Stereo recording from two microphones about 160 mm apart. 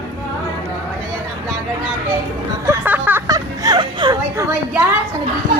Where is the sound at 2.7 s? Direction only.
10° right (ahead or behind); by 4.4 s 25° right (ahead or behind).